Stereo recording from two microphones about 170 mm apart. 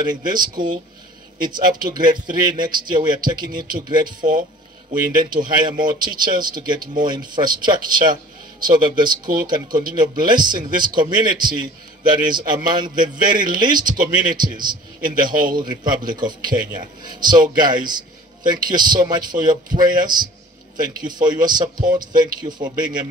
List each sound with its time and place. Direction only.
0.0 s a man's voice: 25° right (ahead or behind)
5.6 s a man's voice: 25° right (ahead or behind)